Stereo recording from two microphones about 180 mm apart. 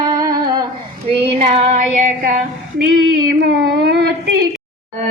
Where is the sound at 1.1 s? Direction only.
30° right (ahead or behind).